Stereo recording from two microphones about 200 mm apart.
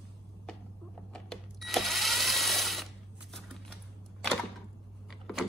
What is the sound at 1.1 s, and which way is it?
Drill, centre (ahead or behind).